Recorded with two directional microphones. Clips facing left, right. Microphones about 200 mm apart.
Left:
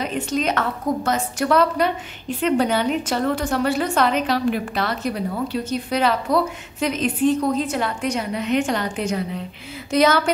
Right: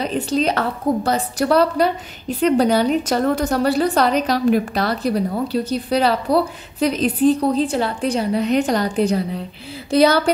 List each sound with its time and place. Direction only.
0.0 s a woman's voice: 35° right (ahead or behind)